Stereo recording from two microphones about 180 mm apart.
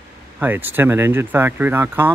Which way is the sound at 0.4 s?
10° right (ahead or behind).